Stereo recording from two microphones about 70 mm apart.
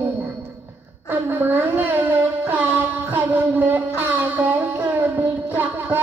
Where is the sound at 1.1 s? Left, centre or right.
Right.